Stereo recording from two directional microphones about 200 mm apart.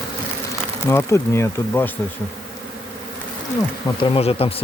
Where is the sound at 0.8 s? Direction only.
10° left (ahead or behind).